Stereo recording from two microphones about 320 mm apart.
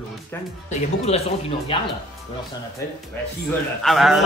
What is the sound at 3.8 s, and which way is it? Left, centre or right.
Speech, centre.